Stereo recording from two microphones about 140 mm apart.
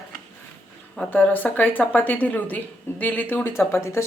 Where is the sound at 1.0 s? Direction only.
10° left (ahead or behind).